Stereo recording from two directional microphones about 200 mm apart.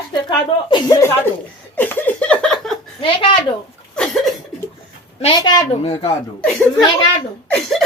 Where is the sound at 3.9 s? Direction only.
Centre (ahead or behind).